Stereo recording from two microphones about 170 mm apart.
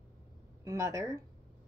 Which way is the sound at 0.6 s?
20° right (ahead or behind).